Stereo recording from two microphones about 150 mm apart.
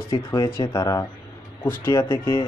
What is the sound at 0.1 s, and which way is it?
Speech, 20° left (ahead or behind).